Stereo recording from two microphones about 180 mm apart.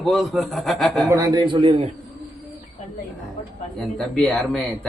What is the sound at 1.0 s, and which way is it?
Speech, 20° right (ahead or behind).